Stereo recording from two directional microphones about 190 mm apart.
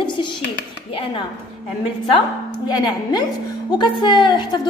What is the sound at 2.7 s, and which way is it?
A woman's voice, 20° left (ahead or behind).